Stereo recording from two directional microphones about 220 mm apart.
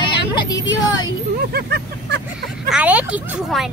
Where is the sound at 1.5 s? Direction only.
45° right (ahead or behind).